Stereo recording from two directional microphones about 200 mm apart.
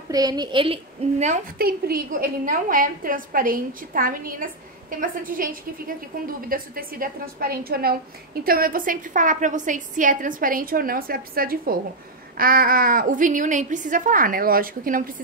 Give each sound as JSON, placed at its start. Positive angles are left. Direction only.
{"t": 0.1, "sound": "a woman's voice", "side_deg": -20}
{"t": 1.2, "sound": "a woman's voice", "side_deg": -45}